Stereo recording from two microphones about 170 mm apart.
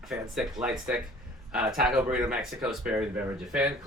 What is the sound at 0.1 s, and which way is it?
Speech, 5° right (ahead or behind).